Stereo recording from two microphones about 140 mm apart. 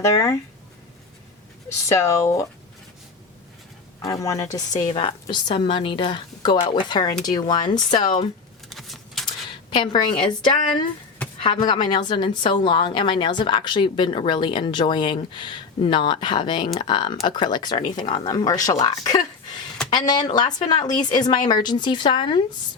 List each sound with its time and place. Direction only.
0.0 s speech: 20° left (ahead or behind)
1.9 s speech: 20° left (ahead or behind)
4.0 s a woman's voice: 25° left (ahead or behind)
7.9 s speech: 55° left (ahead or behind)
8.7 s a sound: centre (ahead or behind)
9.6 s a woman's voice: 35° left (ahead or behind)